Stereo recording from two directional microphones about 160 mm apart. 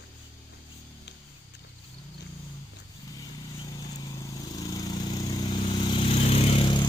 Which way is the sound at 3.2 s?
25° left (ahead or behind).